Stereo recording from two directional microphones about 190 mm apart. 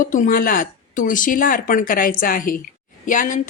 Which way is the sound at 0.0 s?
45° left (ahead or behind).